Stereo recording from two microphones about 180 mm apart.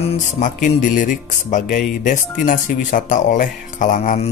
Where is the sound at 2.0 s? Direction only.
45° left (ahead or behind).